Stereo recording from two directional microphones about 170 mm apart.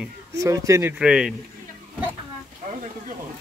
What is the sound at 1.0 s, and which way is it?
Speech, 5° right (ahead or behind).